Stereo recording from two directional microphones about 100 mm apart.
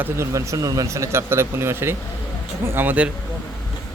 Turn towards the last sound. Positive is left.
turn(degrees=-15)  # may be behind; listen again after turning